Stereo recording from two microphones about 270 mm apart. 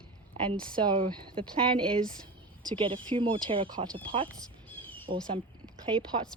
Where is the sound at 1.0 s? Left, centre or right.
Centre.